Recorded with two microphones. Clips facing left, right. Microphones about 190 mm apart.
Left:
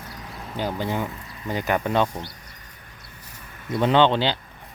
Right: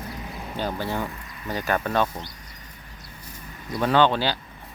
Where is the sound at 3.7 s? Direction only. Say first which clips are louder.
Left 2 dB; 25° left (ahead or behind).